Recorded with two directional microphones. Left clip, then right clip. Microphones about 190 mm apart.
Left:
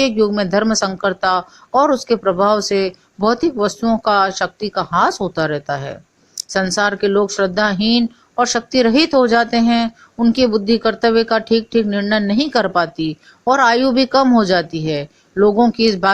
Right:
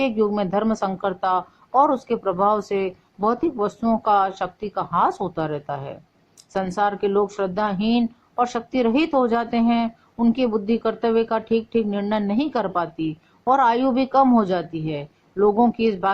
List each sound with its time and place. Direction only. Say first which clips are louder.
0.3 s speech: left 5 dB; 30° left (ahead or behind)